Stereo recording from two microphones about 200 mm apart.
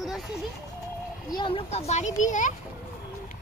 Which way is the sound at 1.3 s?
25° left (ahead or behind).